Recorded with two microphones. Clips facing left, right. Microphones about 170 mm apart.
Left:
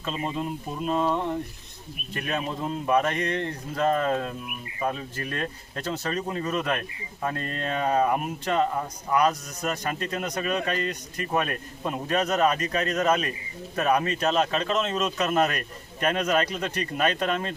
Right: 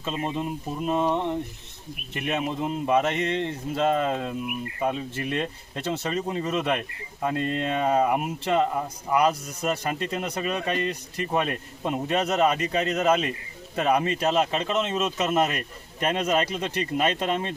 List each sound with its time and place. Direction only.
0.9 s speech: 15° right (ahead or behind)